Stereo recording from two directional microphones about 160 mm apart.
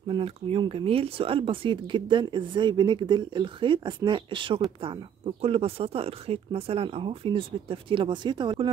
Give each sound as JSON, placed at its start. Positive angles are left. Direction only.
{"t": 0.1, "sound": "speech", "side_deg": -35}